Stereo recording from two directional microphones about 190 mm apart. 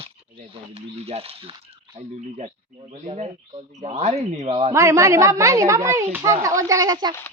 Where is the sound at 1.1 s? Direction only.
35° right (ahead or behind).